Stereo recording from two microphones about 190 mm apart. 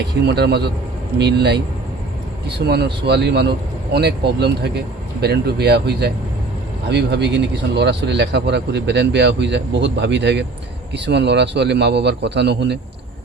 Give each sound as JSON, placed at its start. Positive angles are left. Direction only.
{"t": 0.0, "sound": "speech", "side_deg": -60}